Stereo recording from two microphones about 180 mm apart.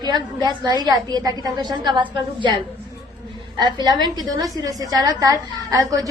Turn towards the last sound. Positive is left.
turn(degrees=-20)  # may be behind; listen again after turning